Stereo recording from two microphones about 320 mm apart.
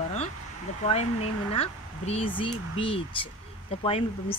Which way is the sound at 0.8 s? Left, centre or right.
Centre.